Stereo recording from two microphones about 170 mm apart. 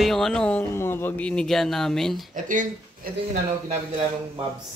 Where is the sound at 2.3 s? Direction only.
50° right (ahead or behind).